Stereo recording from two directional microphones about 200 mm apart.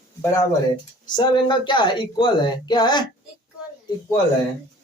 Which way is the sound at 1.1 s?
25° left (ahead or behind).